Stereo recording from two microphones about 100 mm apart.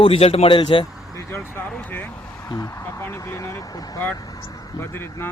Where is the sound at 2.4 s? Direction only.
35° left (ahead or behind).